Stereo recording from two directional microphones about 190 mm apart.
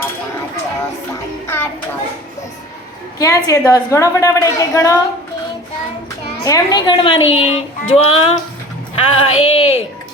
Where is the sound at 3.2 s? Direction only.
15° left (ahead or behind).